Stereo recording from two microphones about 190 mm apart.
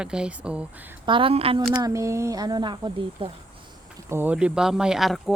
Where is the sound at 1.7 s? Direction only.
20° right (ahead or behind).